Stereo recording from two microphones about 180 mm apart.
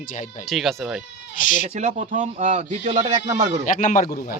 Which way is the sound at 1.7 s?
40° right (ahead or behind).